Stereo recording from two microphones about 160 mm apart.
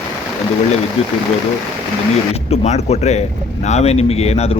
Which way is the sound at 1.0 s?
40° left (ahead or behind).